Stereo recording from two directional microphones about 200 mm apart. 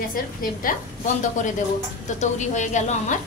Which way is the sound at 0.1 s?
45° left (ahead or behind).